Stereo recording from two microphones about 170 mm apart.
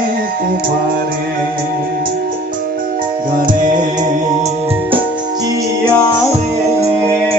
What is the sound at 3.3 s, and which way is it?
Music, 50° right (ahead or behind).